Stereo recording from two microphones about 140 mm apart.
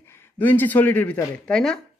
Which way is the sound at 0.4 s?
15° left (ahead or behind).